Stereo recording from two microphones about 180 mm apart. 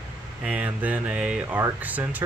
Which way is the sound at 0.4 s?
5° right (ahead or behind).